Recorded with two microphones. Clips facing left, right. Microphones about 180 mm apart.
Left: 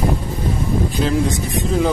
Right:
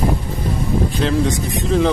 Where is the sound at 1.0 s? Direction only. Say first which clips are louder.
Even; 5° left (ahead or behind).